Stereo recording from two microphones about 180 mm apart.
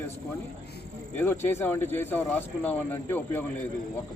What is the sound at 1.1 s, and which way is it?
Speech, 10° left (ahead or behind).